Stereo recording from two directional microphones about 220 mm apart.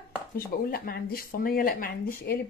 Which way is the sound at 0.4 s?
40° left (ahead or behind).